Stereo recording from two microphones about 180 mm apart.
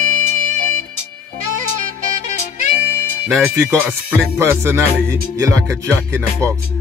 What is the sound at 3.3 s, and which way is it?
Speech, 10° right (ahead or behind).